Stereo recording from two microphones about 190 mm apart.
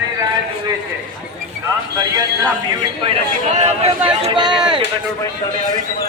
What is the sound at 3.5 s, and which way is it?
Speech, 35° right (ahead or behind).